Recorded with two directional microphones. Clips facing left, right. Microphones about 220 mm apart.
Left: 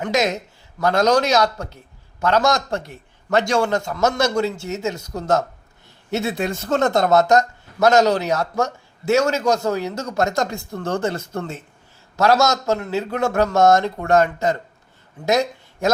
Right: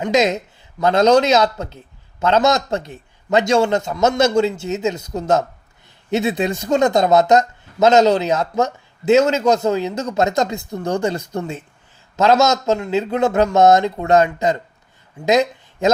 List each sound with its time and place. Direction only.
0.0 s speech: 20° right (ahead or behind)